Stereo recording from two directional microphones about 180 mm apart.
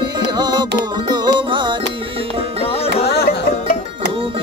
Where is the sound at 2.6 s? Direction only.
30° left (ahead or behind).